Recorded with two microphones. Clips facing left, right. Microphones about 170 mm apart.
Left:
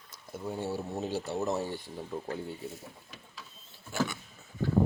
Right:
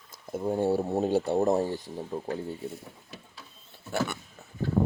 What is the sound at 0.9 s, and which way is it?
Speech, 60° right (ahead or behind).